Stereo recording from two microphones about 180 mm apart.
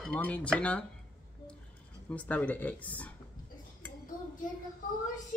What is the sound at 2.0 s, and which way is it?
Speech, 10° left (ahead or behind).